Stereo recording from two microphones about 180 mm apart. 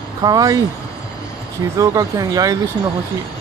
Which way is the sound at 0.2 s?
20° right (ahead or behind).